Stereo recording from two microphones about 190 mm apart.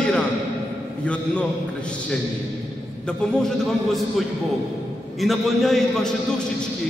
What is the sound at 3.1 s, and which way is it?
Speech, 5° left (ahead or behind).